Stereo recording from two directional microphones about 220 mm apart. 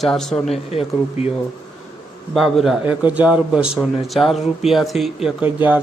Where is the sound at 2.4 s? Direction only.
Centre (ahead or behind).